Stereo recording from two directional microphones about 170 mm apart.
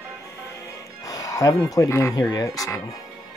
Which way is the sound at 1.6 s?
20° left (ahead or behind).